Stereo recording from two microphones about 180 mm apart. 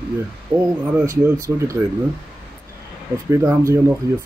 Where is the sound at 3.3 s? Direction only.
15° right (ahead or behind).